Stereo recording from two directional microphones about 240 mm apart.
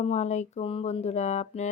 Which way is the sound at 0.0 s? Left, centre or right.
Left.